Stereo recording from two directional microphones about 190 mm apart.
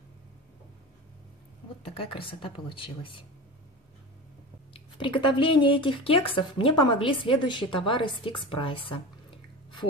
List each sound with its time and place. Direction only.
2.4 s speech: 25° left (ahead or behind)
4.7 s speech: 25° left (ahead or behind)